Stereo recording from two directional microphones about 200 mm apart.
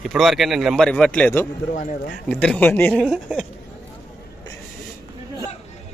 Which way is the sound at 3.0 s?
5° right (ahead or behind).